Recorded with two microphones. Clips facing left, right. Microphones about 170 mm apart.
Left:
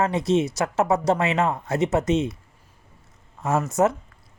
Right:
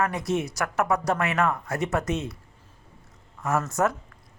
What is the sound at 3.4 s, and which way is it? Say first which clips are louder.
Speech: left 4 dB; 25° left (ahead or behind).